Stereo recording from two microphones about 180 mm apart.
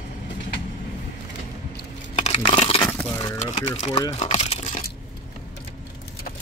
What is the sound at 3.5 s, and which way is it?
Speech, 40° left (ahead or behind).